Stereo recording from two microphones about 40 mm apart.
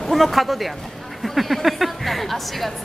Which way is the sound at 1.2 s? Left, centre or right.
Centre.